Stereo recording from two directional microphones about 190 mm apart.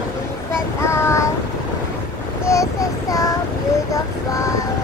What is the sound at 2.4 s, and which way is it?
Child singing, 15° left (ahead or behind).